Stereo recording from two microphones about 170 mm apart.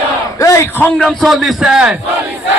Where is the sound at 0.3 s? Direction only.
20° left (ahead or behind).